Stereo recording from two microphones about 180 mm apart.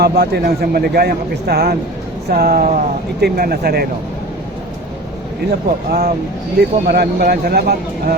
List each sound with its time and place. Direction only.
0.0 s speech: 65° right (ahead or behind)
5.5 s speech: 60° right (ahead or behind)